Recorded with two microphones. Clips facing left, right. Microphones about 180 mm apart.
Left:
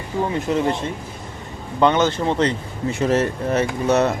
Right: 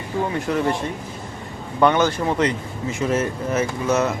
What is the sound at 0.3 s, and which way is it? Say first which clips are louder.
Speech: left 2 dB; 20° left (ahead or behind).